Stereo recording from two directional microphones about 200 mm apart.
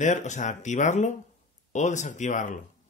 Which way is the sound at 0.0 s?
35° left (ahead or behind).